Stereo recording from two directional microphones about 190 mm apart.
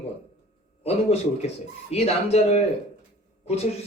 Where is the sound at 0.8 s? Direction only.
35° left (ahead or behind).